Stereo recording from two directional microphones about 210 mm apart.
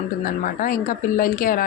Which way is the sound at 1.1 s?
40° left (ahead or behind).